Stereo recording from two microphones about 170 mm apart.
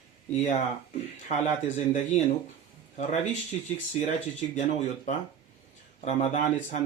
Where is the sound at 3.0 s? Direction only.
45° left (ahead or behind).